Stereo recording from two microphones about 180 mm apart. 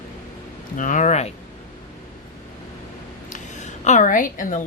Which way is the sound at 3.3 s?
40° left (ahead or behind).